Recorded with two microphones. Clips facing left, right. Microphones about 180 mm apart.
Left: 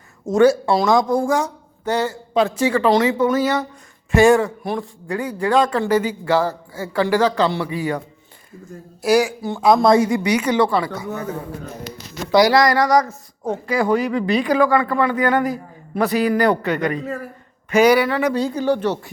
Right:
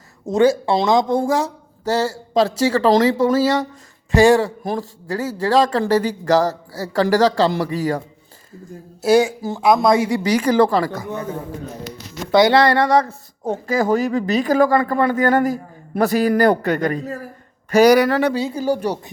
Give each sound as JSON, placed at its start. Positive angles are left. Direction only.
{"t": 0.3, "sound": "a woman's voice", "side_deg": -20}
{"t": 9.0, "sound": "a woman's voice", "side_deg": -25}
{"t": 12.3, "sound": "a woman's voice", "side_deg": -25}
{"t": 13.7, "sound": "a man's voice", "side_deg": -45}
{"t": 18.3, "sound": "speech", "side_deg": -5}